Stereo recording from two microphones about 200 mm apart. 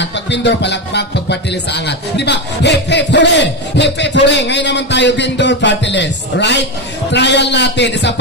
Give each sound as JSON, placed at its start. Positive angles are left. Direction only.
{"t": 0.0, "sound": "speech", "side_deg": 60}